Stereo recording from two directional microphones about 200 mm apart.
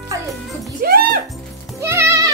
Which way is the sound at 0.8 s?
50° right (ahead or behind).